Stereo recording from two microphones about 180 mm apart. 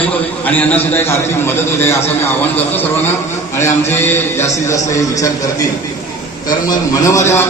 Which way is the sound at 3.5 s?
15° left (ahead or behind).